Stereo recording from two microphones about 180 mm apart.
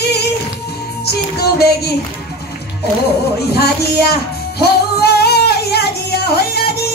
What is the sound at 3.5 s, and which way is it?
Speech, 60° left (ahead or behind).